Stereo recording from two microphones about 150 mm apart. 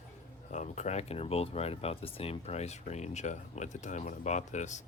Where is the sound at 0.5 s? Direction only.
50° left (ahead or behind).